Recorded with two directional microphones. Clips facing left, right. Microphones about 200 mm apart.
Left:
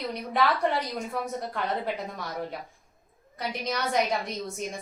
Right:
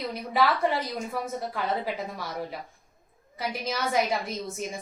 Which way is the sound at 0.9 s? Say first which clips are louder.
Even; 5° right (ahead or behind).